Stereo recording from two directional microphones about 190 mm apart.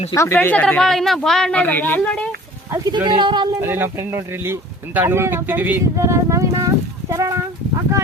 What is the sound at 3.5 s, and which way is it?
Speech, 10° right (ahead or behind).